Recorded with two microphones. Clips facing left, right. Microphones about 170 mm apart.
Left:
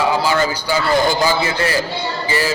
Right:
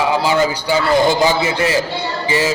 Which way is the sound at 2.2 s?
20° right (ahead or behind).